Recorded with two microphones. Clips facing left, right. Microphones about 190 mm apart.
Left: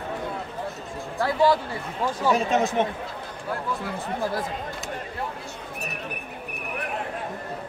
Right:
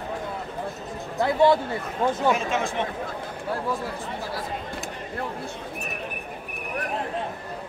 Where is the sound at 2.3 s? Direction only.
40° left (ahead or behind).